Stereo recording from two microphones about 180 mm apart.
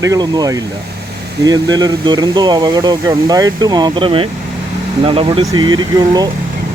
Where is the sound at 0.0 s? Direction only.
20° right (ahead or behind).